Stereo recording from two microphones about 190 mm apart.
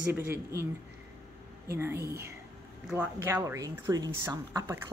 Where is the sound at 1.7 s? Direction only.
15° right (ahead or behind).